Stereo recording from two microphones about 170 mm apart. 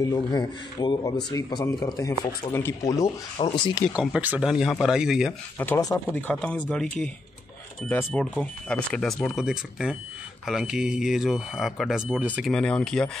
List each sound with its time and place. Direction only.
0.0 s speech: 20° left (ahead or behind)
3.3 s speech: 30° left (ahead or behind)
3.9 s speech: 5° right (ahead or behind)
5.6 s speech: 15° left (ahead or behind)
7.9 s speech: 10° left (ahead or behind)